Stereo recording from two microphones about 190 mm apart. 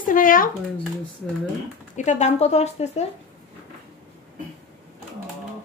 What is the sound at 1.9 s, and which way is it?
Speech, 40° left (ahead or behind).